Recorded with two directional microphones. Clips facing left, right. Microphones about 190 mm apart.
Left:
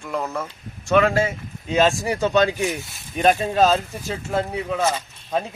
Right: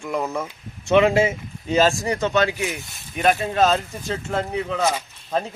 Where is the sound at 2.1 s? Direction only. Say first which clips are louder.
Left 2 dB; 10° left (ahead or behind).